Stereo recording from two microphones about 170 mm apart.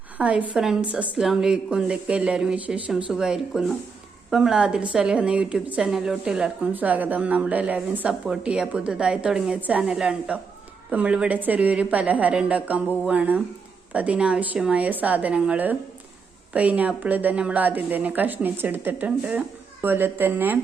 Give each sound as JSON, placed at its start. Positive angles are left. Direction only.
{"t": 0.2, "sound": "a woman's voice", "side_deg": -5}